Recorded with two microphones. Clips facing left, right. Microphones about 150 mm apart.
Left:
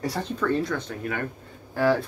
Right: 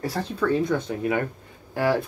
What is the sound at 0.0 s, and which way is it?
Speech, centre (ahead or behind).